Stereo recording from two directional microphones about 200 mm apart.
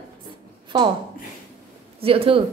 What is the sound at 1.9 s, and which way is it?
Speech, 30° right (ahead or behind).